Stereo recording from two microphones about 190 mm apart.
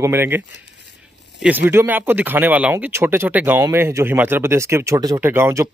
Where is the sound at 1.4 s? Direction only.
10° right (ahead or behind).